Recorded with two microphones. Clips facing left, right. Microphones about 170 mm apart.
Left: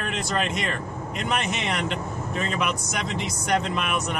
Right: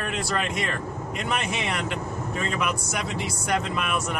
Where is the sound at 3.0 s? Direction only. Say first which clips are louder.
Left 1 dB; 5° right (ahead or behind).